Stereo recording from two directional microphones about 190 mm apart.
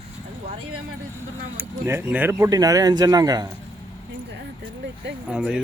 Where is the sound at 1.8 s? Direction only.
10° right (ahead or behind).